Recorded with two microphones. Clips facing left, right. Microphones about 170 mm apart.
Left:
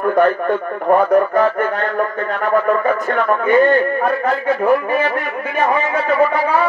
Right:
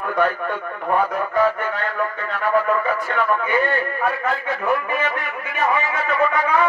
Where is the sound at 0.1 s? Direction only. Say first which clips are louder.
Left 5 dB; 45° left (ahead or behind).